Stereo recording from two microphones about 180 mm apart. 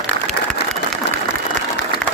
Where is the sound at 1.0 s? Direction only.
75° left (ahead or behind).